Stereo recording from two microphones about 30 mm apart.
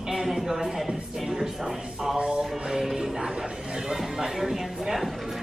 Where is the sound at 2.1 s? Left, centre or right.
Right.